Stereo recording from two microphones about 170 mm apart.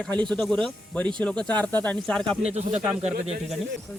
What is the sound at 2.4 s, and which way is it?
Speech, 40° right (ahead or behind).